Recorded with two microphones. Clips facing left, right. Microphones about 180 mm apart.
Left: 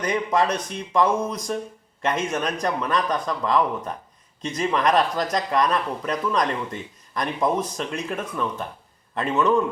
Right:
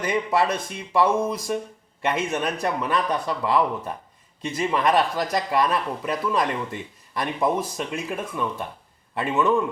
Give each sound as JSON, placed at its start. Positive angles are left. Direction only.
{"t": 0.0, "sound": "speech", "side_deg": -5}